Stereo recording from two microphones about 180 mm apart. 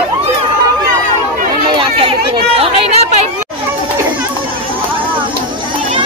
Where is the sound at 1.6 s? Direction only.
30° right (ahead or behind).